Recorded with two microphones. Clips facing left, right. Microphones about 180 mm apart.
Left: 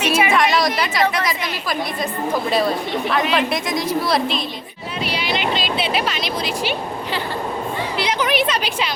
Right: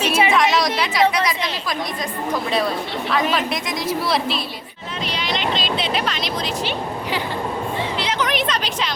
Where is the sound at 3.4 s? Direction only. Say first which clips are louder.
Left 3 dB; centre (ahead or behind).